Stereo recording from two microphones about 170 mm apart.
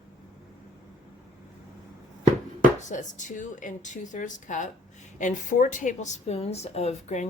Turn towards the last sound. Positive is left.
turn(degrees=40)  # may be behind; listen again after turning